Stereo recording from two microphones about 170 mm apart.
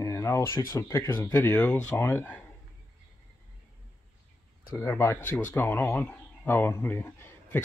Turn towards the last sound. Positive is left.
turn(degrees=15)  # may be behind; listen again after turning